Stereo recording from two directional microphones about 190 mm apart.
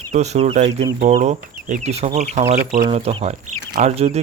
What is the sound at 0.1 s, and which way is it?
Speech, 35° right (ahead or behind).